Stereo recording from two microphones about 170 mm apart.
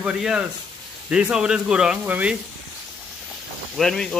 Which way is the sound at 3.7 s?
5° left (ahead or behind).